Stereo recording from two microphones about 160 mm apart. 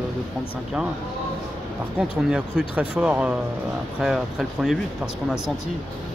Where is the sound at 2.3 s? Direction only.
5° right (ahead or behind).